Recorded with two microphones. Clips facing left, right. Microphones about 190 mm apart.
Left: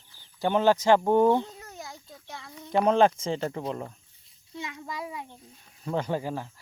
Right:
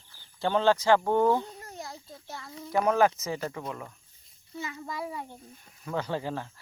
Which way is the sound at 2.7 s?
25° left (ahead or behind).